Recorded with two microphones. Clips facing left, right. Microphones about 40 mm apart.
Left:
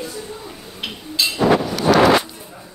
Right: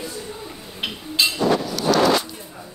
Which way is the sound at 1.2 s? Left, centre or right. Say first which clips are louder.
Right 1 dB; centre.